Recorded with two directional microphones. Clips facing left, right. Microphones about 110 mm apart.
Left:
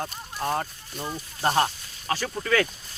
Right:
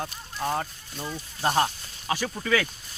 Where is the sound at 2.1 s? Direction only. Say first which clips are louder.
Even; 15° right (ahead or behind).